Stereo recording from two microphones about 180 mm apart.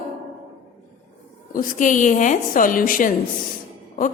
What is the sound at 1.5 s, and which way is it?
A woman's voice, 45° left (ahead or behind).